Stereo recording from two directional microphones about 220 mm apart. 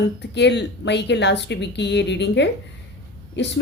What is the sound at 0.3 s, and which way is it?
Speech, 50° left (ahead or behind).